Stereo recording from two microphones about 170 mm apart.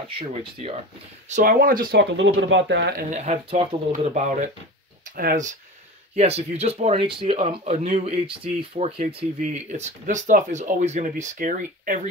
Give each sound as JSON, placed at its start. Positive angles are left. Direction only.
{"t": 0.3, "sound": "speech", "side_deg": -35}
{"t": 1.3, "sound": "speech", "side_deg": -55}
{"t": 3.1, "sound": "speech", "side_deg": -40}
{"t": 5.1, "sound": "speech", "side_deg": -55}
{"t": 6.1, "sound": "speech", "side_deg": -35}